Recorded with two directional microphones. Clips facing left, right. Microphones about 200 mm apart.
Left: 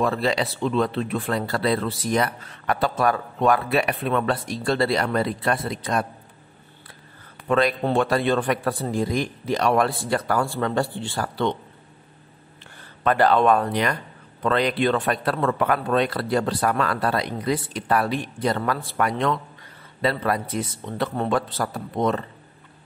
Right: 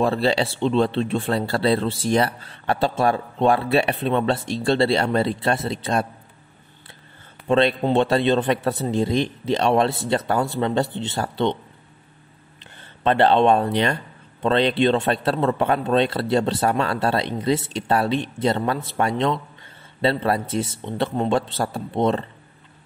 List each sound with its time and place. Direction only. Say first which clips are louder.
0.0 s speech: right 3 dB; 30° right (ahead or behind)
7.4 s speech: right 2 dB; 25° right (ahead or behind)
12.5 s speech: right 1 dB; 25° right (ahead or behind)